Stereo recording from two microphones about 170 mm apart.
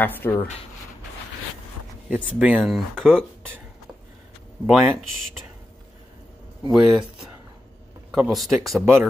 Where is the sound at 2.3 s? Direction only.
5° right (ahead or behind).